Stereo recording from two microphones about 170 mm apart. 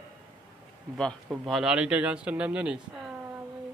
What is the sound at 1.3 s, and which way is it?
Speech, 5° right (ahead or behind).